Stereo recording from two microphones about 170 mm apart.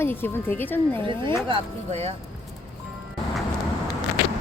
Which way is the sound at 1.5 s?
40° right (ahead or behind).